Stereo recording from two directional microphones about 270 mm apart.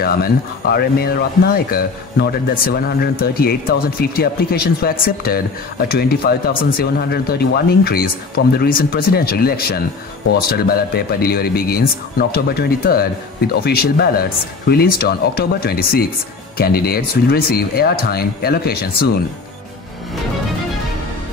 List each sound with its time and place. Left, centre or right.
0.0 s speech: left